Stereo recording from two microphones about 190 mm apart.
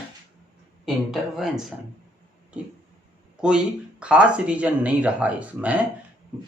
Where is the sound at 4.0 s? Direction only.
5° right (ahead or behind).